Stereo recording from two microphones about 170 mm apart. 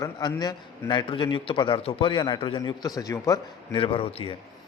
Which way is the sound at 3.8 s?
35° left (ahead or behind).